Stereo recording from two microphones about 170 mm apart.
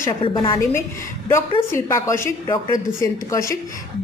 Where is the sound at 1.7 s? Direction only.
15° left (ahead or behind).